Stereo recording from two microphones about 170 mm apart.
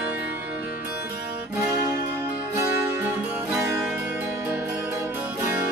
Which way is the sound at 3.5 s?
15° right (ahead or behind).